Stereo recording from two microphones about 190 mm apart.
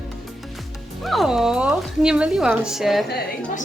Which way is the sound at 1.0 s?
Centre (ahead or behind).